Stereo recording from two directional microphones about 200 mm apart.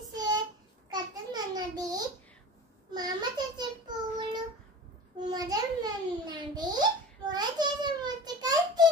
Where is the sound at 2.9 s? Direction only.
20° right (ahead or behind).